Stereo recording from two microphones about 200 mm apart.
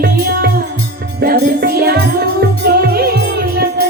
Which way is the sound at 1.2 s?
50° right (ahead or behind).